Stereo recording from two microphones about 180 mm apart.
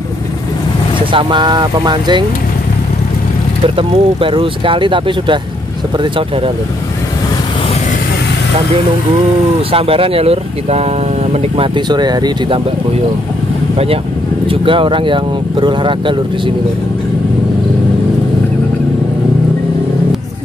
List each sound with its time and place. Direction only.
1.1 s speech: 25° right (ahead or behind)
3.6 s speech: 30° right (ahead or behind)
9.7 s speech: 30° right (ahead or behind)
14.5 s speech: 30° right (ahead or behind)